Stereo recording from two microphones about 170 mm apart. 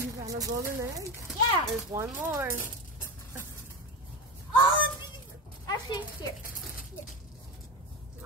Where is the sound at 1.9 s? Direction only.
15° right (ahead or behind).